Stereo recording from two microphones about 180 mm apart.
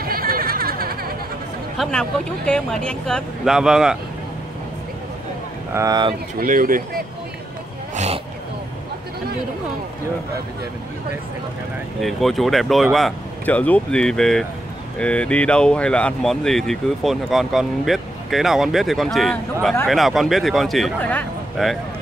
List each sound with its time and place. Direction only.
0.0 s bleat: 55° right (ahead or behind)
1.8 s speech: 5° left (ahead or behind)
5.7 s speech: 20° right (ahead or behind)
6.4 s speech: 50° right (ahead or behind)
7.9 s vehicle: 40° right (ahead or behind)
12.0 s speech: centre (ahead or behind)